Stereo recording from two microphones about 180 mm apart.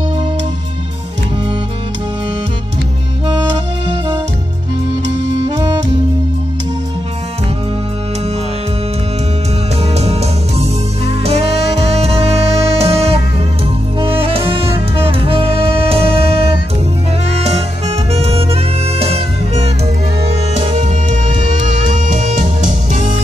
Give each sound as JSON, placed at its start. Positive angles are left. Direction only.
{"t": 9.8, "sound": "music", "side_deg": -35}
{"t": 17.4, "sound": "music", "side_deg": -35}